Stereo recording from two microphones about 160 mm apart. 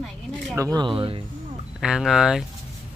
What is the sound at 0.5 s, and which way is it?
Speech, 25° right (ahead or behind).